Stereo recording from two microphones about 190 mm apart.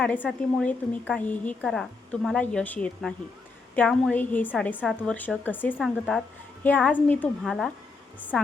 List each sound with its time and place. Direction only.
0.0 s a woman's voice: 5° left (ahead or behind)